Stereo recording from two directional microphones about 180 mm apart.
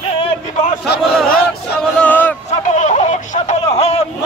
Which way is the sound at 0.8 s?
65° left (ahead or behind).